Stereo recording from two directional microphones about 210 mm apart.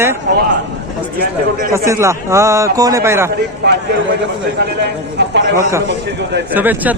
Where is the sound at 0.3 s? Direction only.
50° right (ahead or behind).